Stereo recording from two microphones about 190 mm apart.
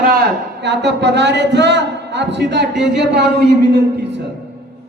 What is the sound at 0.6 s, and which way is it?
A man's voice, 65° right (ahead or behind).